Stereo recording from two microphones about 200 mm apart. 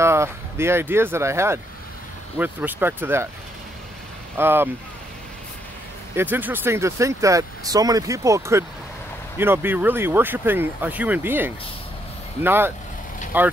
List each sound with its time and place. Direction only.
0.0 s speech: 15° right (ahead or behind)
4.4 s speech: 10° right (ahead or behind)
6.3 s speech: 10° right (ahead or behind)